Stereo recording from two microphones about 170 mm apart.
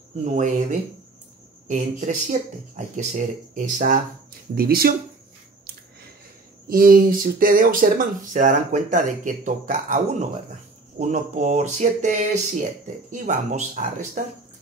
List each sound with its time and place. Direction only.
0.2 s speech: 45° right (ahead or behind); by 4.9 s 60° right (ahead or behind)
6.7 s speech: 55° right (ahead or behind)
11.0 s speech: 45° right (ahead or behind)